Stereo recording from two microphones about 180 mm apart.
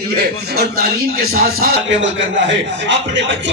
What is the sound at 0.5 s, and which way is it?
Speech, 55° right (ahead or behind).